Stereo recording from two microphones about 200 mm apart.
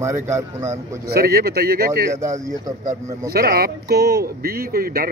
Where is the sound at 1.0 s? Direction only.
50° right (ahead or behind).